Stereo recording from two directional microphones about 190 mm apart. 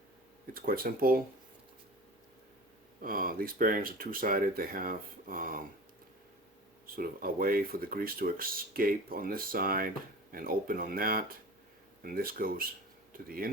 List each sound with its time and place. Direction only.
0.5 s speech: 50° right (ahead or behind)
3.0 s speech: 50° right (ahead or behind)
6.8 s speech: 50° right (ahead or behind)